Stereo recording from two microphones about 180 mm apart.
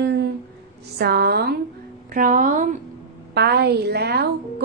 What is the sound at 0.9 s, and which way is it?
Speech, 60° right (ahead or behind).